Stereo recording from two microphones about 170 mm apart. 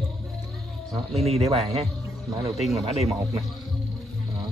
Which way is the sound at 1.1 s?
35° right (ahead or behind).